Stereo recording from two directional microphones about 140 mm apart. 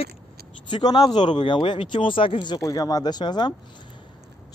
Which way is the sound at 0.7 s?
30° left (ahead or behind).